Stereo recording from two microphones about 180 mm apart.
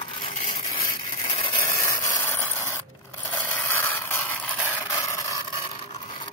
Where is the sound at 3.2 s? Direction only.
10° left (ahead or behind).